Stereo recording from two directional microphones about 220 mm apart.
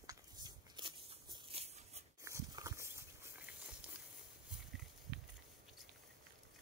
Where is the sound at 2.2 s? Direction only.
15° right (ahead or behind).